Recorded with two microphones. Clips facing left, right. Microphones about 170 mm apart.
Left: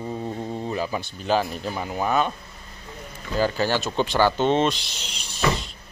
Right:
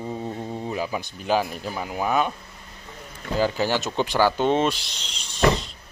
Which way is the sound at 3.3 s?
15° right (ahead or behind).